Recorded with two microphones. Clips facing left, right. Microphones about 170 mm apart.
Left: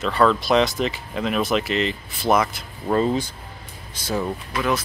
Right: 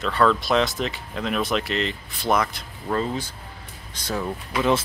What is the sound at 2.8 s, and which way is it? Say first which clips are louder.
Speech: left 5 dB; 20° left (ahead or behind).